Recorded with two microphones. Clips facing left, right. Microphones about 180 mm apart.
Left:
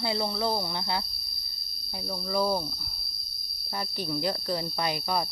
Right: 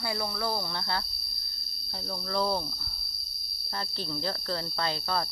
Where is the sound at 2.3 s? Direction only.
10° left (ahead or behind).